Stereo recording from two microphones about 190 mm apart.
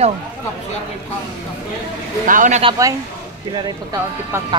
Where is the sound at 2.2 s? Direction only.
40° right (ahead or behind).